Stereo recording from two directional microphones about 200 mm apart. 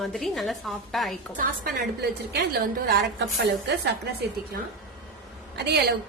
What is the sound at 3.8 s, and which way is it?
Speech, 55° right (ahead or behind).